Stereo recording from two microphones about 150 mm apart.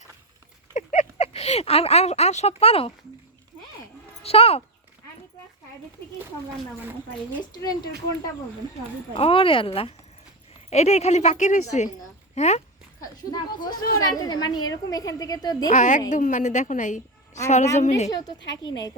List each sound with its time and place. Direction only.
0.7 s a sound: 55° left (ahead or behind)
4.2 s speech: 40° left (ahead or behind)
7.5 s a woman's voice: 25° left (ahead or behind)
9.1 s a woman's voice: 40° left (ahead or behind)
13.3 s a woman's voice: 30° left (ahead or behind)
15.7 s a woman's voice: 55° left (ahead or behind)
18.1 s a woman's voice: 25° left (ahead or behind)